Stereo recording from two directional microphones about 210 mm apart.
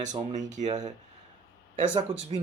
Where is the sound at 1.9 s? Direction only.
30° right (ahead or behind).